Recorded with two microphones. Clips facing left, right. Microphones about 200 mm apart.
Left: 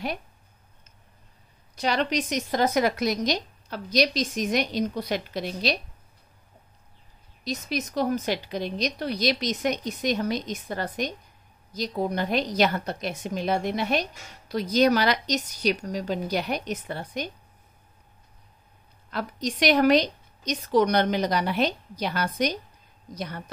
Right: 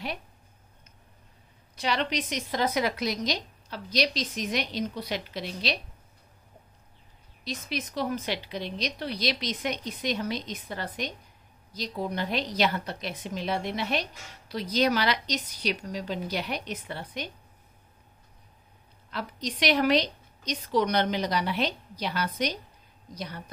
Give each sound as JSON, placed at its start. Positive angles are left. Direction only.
{"t": 1.8, "sound": "speech", "side_deg": 45}
{"t": 7.4, "sound": "speech", "side_deg": 40}
{"t": 19.0, "sound": "speech", "side_deg": 45}